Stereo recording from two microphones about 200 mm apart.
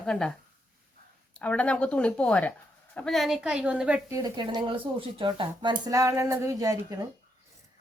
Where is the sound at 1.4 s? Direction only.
5° left (ahead or behind).